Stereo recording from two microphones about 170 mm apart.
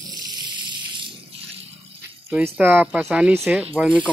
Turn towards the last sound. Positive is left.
turn(degrees=-5)  # may be behind; listen again after turning